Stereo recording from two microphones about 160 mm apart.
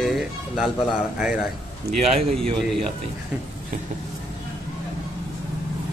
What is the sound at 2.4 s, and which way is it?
Speech, 30° right (ahead or behind).